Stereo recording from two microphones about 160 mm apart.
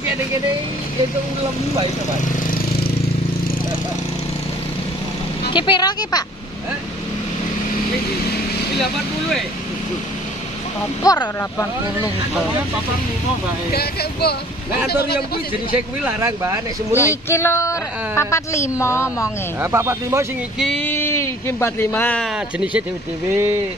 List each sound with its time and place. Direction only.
5.5 s speech: 30° left (ahead or behind)
11.1 s speech: 20° left (ahead or behind)
15.7 s speech: 10° right (ahead or behind)
17.1 s speech: 15° left (ahead or behind)
19.6 s speech: 15° right (ahead or behind)
20.5 s a sound: centre (ahead or behind)
20.8 s speech: 15° left (ahead or behind)
23.3 s speech: 15° right (ahead or behind)